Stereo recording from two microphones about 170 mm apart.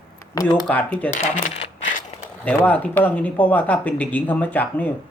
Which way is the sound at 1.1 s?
50° left (ahead or behind).